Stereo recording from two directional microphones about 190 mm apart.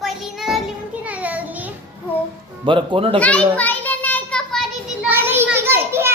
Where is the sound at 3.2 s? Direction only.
5° left (ahead or behind).